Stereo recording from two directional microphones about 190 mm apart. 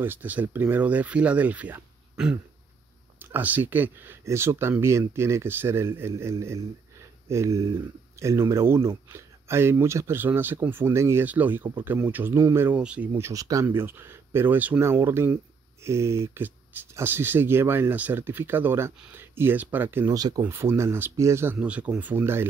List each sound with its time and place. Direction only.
0.0 s speech: 10° right (ahead or behind)